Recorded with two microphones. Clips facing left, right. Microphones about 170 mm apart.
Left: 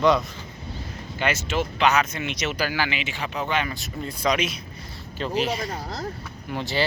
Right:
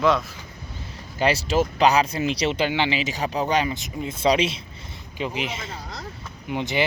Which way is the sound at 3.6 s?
20° right (ahead or behind).